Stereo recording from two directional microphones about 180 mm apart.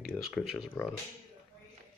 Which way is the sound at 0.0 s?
Centre (ahead or behind).